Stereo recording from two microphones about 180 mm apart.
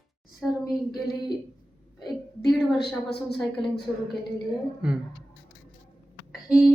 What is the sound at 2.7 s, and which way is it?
Speech, 65° left (ahead or behind).